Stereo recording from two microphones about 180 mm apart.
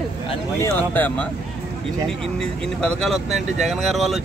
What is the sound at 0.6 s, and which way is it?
Speech, 10° left (ahead or behind).